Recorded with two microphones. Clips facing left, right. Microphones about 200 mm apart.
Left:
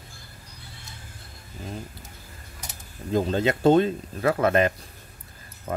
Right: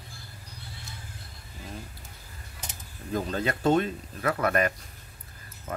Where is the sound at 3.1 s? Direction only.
25° left (ahead or behind).